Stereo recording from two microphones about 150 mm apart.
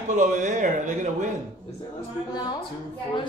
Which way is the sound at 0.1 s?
55° right (ahead or behind).